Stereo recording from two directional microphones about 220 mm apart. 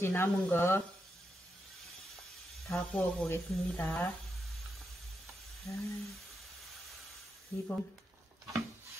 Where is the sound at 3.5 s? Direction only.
Centre (ahead or behind).